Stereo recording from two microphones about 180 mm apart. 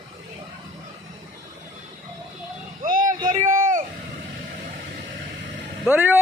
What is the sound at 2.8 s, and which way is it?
Vehicle, 50° right (ahead or behind).